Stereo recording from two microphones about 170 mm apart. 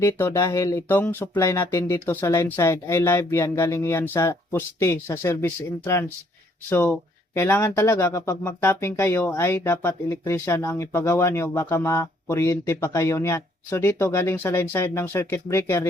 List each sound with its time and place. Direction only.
0.0 s speech: 15° left (ahead or behind)